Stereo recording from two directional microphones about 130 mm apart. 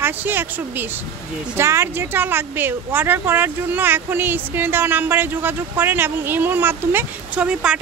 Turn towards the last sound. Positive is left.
turn(degrees=-5)  # may be behind; listen again after turning